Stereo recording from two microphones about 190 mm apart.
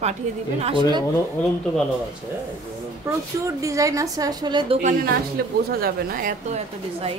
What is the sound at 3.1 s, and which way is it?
A woman's voice, 15° right (ahead or behind).